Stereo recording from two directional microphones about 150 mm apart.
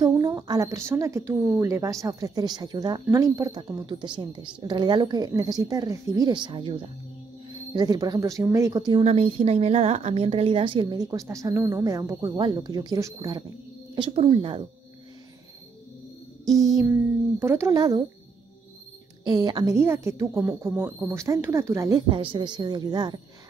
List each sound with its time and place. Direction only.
0.0 s a woman's voice: 25° right (ahead or behind)
9.0 s a woman's voice: 45° right (ahead or behind); by 13.4 s 25° right (ahead or behind)
13.9 s speech: 35° right (ahead or behind)
16.4 s a woman's voice: 25° right (ahead or behind)
19.2 s a woman's voice: 30° right (ahead or behind)
19.7 s a woman's voice: 20° right (ahead or behind)
22.1 s a woman's voice: 35° right (ahead or behind)